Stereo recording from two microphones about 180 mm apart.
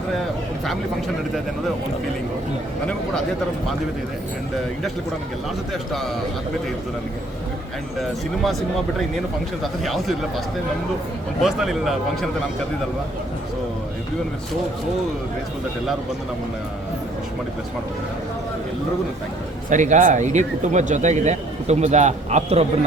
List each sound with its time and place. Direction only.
5.7 s a man's voice: centre (ahead or behind)
9.8 s a man's voice: centre (ahead or behind)
11.4 s a man's voice: centre (ahead or behind)
19.7 s speech: 45° right (ahead or behind)